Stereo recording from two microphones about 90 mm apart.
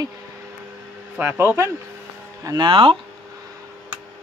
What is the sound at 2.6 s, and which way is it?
Speech, 80° right.